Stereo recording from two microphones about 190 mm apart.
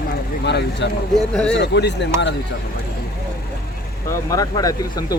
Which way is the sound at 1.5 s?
65° left (ahead or behind).